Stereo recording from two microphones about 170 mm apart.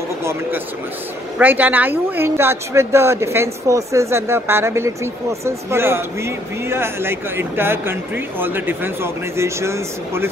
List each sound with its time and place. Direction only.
0.2 s a man's voice: 15° right (ahead or behind)